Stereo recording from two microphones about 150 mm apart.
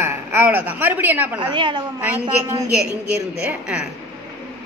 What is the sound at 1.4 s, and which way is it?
Speech, 30° right (ahead or behind).